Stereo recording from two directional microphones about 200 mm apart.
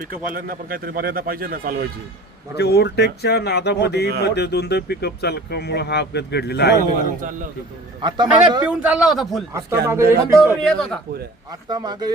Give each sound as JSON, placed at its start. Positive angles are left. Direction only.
{"t": 0.3, "sound": "speech", "side_deg": -45}
{"t": 2.6, "sound": "speech", "side_deg": 55}
{"t": 7.2, "sound": "a man's voice", "side_deg": -40}
{"t": 8.0, "sound": "a man's voice", "side_deg": -20}
{"t": 8.6, "sound": "a man's voice", "side_deg": -5}
{"t": 9.5, "sound": "a man's voice", "side_deg": -15}
{"t": 10.6, "sound": "a man's voice", "side_deg": 5}
{"t": 11.7, "sound": "a man's voice", "side_deg": -20}